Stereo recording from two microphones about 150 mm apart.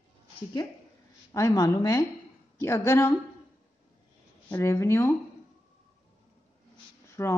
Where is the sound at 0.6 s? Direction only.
25° left (ahead or behind).